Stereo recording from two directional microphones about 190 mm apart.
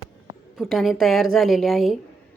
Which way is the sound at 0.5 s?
Centre (ahead or behind).